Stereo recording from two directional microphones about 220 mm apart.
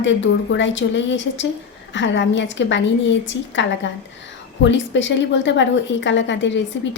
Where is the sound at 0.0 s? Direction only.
55° left (ahead or behind).